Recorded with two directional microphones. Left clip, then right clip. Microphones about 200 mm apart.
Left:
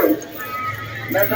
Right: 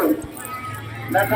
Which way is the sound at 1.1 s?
50° right (ahead or behind).